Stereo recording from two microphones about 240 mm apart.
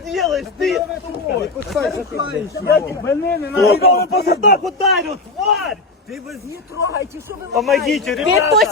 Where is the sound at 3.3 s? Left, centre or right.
Left.